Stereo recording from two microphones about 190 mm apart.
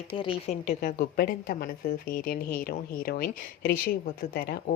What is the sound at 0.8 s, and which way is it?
Speech, 50° left (ahead or behind).